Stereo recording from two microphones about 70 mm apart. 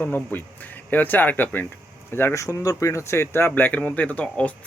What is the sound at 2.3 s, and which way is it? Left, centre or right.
Speech, left.